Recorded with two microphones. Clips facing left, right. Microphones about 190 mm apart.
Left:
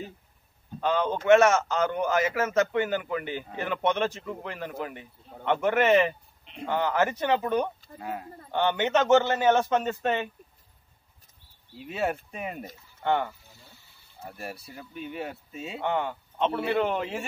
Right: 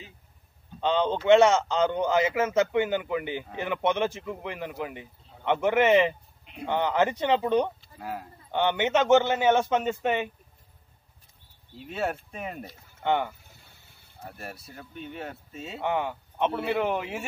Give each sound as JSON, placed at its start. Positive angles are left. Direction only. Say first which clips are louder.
{"t": 0.7, "sound": "a man's voice", "louder": "right 1 dB", "side_deg": -20}
{"t": 6.4, "sound": "a sound", "louder": "even", "side_deg": -5}
{"t": 6.7, "sound": "speech", "louder": "right 1 dB", "side_deg": -20}
{"t": 8.0, "sound": "livestock", "louder": "even", "side_deg": 0}
{"t": 8.5, "sound": "a man's voice", "louder": "even", "side_deg": -15}
{"t": 11.7, "sound": "livestock", "louder": "left 1 dB", "side_deg": 5}
{"t": 13.0, "sound": "speech", "louder": "even", "side_deg": -15}
{"t": 14.2, "sound": "livestock", "louder": "left 2 dB", "side_deg": 0}
{"t": 15.8, "sound": "speech", "louder": "even", "side_deg": -10}
{"t": 16.5, "sound": "livestock", "louder": "left 3 dB", "side_deg": 0}
{"t": 16.8, "sound": "a man's voice", "louder": "even", "side_deg": -15}